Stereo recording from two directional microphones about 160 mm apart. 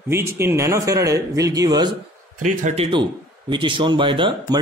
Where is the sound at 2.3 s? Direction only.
50° right (ahead or behind); by 4.6 s 30° right (ahead or behind).